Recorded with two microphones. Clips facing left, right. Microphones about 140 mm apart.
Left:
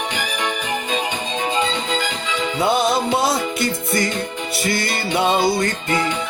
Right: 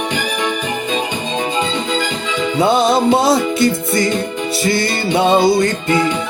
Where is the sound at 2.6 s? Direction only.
25° right (ahead or behind).